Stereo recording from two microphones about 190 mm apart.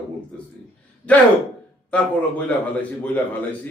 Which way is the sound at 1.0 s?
5° left (ahead or behind).